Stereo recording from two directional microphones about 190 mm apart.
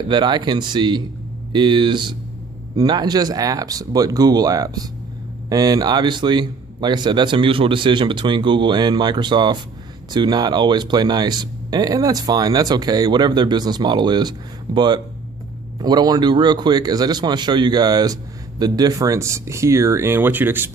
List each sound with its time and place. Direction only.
0.1 s speech: 25° right (ahead or behind)